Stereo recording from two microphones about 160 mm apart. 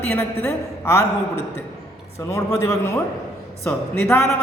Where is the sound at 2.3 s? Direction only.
20° left (ahead or behind).